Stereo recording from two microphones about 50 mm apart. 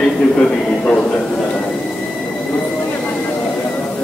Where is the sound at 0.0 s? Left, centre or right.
Left.